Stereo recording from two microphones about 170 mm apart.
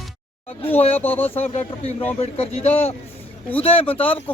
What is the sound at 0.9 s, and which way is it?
Speech, 10° left (ahead or behind).